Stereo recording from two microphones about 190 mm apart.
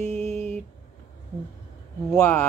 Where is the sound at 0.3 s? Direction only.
35° right (ahead or behind).